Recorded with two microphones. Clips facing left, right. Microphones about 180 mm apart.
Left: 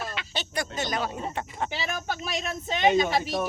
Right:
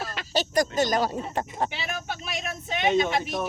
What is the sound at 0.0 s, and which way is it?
Speech, 40° right (ahead or behind).